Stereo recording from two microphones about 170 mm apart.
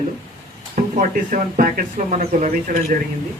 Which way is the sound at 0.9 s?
50° right (ahead or behind).